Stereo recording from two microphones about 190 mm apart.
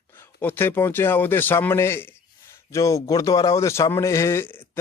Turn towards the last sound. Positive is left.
turn(degrees=10)  # may be behind; listen again after turning